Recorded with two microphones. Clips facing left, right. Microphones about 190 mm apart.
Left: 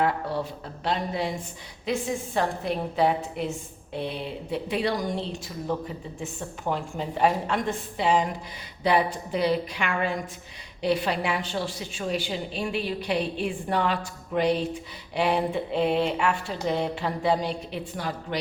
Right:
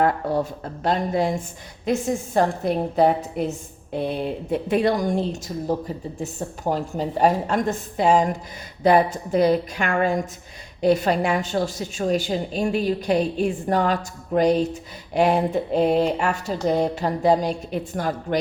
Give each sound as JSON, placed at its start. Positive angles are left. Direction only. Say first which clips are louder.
{"t": 0.0, "sound": "a woman's voice", "louder": "right 5 dB", "side_deg": -45}